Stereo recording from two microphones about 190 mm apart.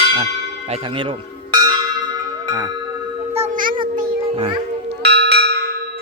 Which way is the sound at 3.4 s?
45° right (ahead or behind).